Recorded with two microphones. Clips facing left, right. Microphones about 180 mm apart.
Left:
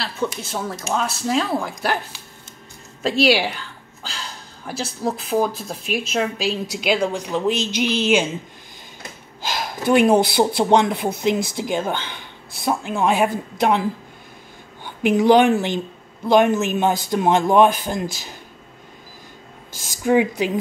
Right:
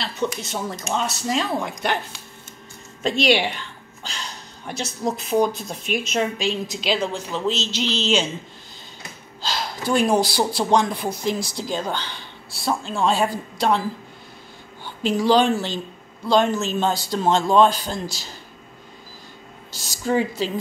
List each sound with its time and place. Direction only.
0.0 s speech: centre (ahead or behind)
3.0 s a sound: 5° left (ahead or behind)
5.0 s a woman's voice: centre (ahead or behind)
9.4 s a woman's voice: 15° left (ahead or behind)
15.0 s a woman's voice: 20° left (ahead or behind)
19.7 s a sound: 50° left (ahead or behind)
20.0 s a woman's voice: 15° left (ahead or behind)